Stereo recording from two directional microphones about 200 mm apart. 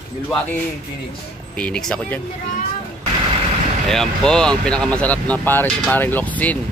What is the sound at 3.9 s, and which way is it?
Speech, 5° left (ahead or behind).